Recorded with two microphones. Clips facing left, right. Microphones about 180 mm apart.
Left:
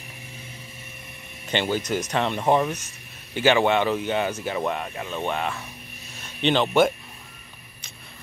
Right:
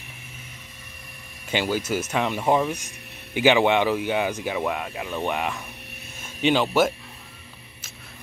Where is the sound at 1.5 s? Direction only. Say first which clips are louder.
Even; 5° right (ahead or behind).